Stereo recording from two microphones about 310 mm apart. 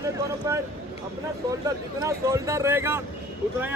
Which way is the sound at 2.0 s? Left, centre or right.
Centre.